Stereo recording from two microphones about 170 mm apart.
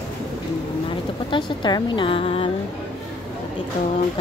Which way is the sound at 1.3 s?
25° left (ahead or behind).